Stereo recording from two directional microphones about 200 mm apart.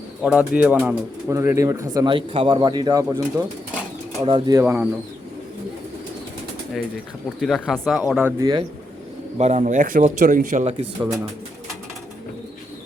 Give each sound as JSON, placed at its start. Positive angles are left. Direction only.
{"t": 0.2, "sound": "speech", "side_deg": -5}
{"t": 3.1, "sound": "speech", "side_deg": -10}
{"t": 4.2, "sound": "speech", "side_deg": -25}
{"t": 4.6, "sound": "speech", "side_deg": -10}
{"t": 7.4, "sound": "speech", "side_deg": 5}
{"t": 9.4, "sound": "speech", "side_deg": -35}